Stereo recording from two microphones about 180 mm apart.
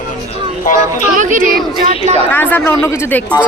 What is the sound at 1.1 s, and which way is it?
Chatter, 45° right (ahead or behind).